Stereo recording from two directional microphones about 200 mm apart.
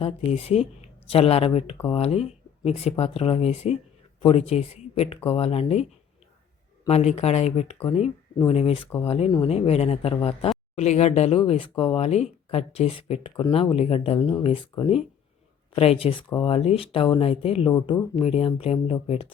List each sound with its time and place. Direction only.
0.0 s speech: 30° left (ahead or behind)
6.8 s speech: 35° left (ahead or behind)